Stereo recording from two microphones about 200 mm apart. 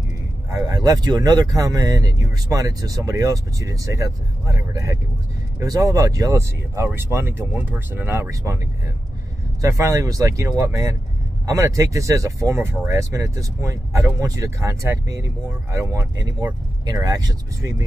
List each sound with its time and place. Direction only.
0.5 s speech: 15° right (ahead or behind)
9.6 s speech: 15° right (ahead or behind)